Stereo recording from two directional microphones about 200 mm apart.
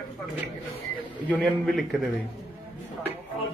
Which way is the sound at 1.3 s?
Centre (ahead or behind).